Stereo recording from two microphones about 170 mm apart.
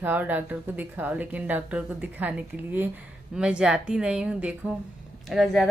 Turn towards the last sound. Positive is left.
turn(degrees=0)  # may be behind; listen again after turning